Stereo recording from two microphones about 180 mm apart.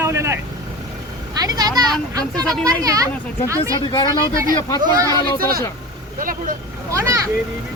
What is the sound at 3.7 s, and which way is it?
Speech, 25° left (ahead or behind).